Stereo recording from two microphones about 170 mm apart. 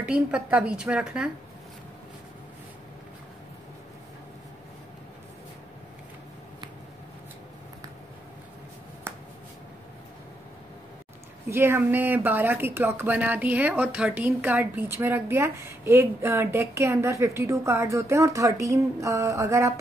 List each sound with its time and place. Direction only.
0.0 s a woman's voice: 5° right (ahead or behind)
9.1 s finger snapping: 15° right (ahead or behind)
11.4 s a woman's voice: 15° right (ahead or behind)